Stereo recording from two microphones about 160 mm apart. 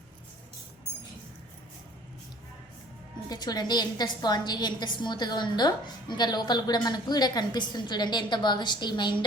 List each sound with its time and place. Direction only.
3.2 s a woman's voice: 25° left (ahead or behind)